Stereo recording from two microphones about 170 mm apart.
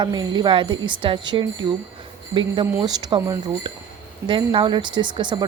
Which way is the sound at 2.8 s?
25° right (ahead or behind).